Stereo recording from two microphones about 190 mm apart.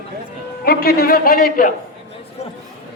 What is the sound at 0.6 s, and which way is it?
A man's voice, 55° left (ahead or behind).